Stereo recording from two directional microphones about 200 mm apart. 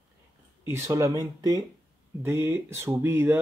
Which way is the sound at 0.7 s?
15° right (ahead or behind).